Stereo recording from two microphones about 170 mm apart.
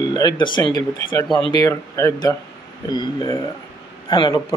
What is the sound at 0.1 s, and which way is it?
A man's voice, 25° left (ahead or behind).